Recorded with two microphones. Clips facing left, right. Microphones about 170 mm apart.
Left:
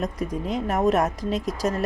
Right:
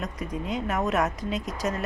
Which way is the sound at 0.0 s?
40° left (ahead or behind).